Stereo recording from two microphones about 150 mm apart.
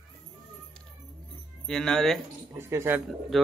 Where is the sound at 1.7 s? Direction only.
5° left (ahead or behind).